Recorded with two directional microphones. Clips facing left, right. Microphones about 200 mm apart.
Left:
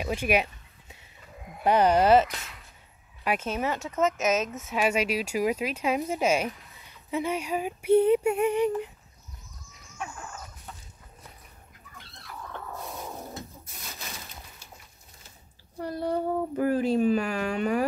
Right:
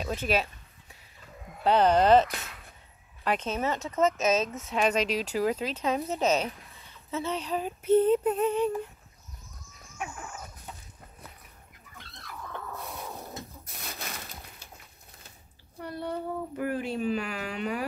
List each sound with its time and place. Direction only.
0.0 s a sound: 10° left (ahead or behind)
1.6 s speech: 10° left (ahead or behind)
3.3 s speech: 10° left (ahead or behind)
15.8 s speech: 40° left (ahead or behind)